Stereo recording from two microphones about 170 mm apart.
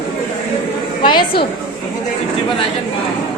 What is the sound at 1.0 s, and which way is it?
Speech, 30° left (ahead or behind).